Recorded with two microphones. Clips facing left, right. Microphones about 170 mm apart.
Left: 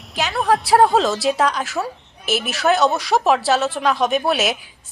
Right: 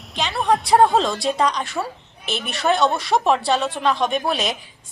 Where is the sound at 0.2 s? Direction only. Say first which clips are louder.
Left 1 dB; 5° left (ahead or behind).